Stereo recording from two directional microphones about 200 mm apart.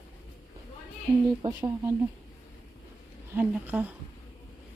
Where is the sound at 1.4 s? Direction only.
25° right (ahead or behind).